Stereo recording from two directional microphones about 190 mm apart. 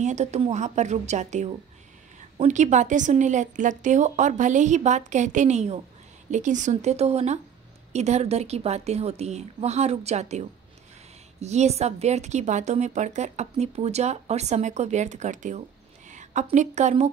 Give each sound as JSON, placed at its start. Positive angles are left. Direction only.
{"t": 0.0, "sound": "speech", "side_deg": -35}
{"t": 11.4, "sound": "a woman's voice", "side_deg": -35}